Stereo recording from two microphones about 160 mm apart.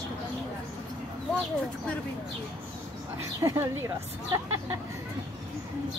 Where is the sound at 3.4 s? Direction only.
20° right (ahead or behind).